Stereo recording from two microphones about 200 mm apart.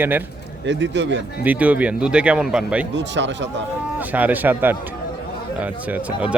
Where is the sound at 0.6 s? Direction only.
60° right (ahead or behind).